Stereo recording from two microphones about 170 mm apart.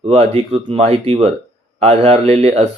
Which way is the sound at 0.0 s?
35° right (ahead or behind).